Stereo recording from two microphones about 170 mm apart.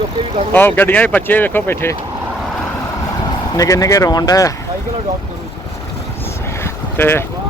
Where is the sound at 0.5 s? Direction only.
10° left (ahead or behind).